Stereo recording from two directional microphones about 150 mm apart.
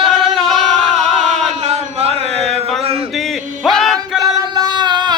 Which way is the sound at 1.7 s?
45° right (ahead or behind).